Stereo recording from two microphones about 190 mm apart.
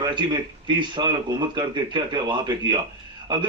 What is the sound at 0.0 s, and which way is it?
A man's voice, 25° right (ahead or behind).